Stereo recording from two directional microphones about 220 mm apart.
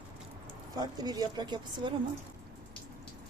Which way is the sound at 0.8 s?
20° right (ahead or behind).